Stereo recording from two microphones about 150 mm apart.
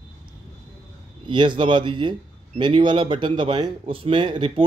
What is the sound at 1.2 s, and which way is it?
A man's voice, 35° right (ahead or behind).